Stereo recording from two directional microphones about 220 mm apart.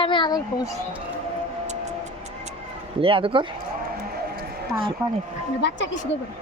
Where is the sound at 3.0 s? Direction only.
25° right (ahead or behind).